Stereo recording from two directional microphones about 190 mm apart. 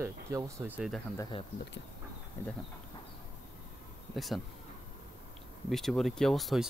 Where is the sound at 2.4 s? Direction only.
10° left (ahead or behind).